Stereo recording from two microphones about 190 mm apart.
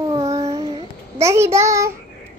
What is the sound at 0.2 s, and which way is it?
Child singing, 35° right (ahead or behind).